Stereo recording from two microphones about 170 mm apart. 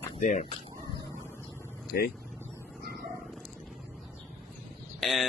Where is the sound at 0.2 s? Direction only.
45° left (ahead or behind).